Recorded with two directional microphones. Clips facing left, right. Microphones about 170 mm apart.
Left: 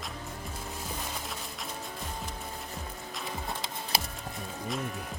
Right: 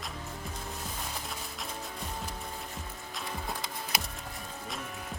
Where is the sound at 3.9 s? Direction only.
30° left (ahead or behind).